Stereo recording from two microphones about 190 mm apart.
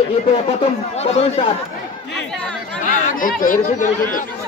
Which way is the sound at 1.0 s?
35° left (ahead or behind).